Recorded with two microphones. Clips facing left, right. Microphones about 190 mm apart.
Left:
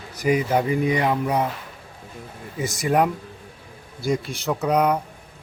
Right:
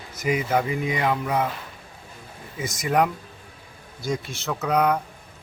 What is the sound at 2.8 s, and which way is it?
Speech, 30° left (ahead or behind).